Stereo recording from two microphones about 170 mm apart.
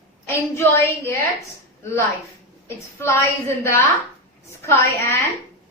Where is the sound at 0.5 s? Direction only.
15° left (ahead or behind).